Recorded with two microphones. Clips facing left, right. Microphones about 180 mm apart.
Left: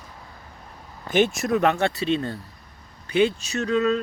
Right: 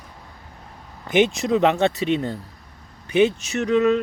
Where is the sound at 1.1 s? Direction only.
20° right (ahead or behind).